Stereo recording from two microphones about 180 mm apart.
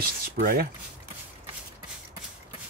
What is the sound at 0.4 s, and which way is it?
Speech, 50° right (ahead or behind).